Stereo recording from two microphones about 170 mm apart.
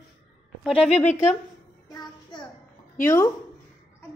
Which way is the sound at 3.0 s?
15° left (ahead or behind).